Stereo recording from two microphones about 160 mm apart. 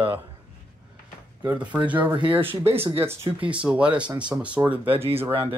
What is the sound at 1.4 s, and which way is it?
Speech, 10° right (ahead or behind).